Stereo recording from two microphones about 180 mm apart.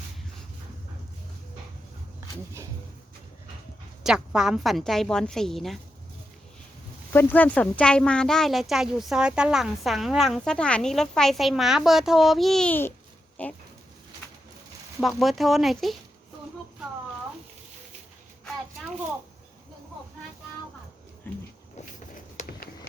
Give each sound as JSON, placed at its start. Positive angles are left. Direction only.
{"t": 2.2, "sound": "speech", "side_deg": -15}
{"t": 4.0, "sound": "speech", "side_deg": -5}
{"t": 7.1, "sound": "speech", "side_deg": 10}
{"t": 14.2, "sound": "pigeon", "side_deg": 10}
{"t": 15.0, "sound": "speech", "side_deg": 0}
{"t": 21.2, "sound": "speech", "side_deg": 10}
{"t": 22.1, "sound": "a sound", "side_deg": 50}